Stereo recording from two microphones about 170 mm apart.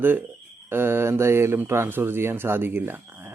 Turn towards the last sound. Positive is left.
turn(degrees=-10)  # may be behind; listen again after turning